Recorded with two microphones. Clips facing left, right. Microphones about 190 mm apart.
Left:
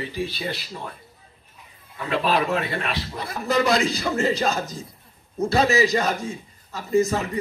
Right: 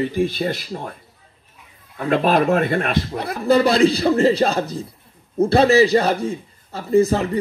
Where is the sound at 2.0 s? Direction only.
50° right (ahead or behind).